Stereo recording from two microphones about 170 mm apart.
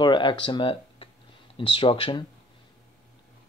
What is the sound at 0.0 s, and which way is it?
Speech, 30° left (ahead or behind).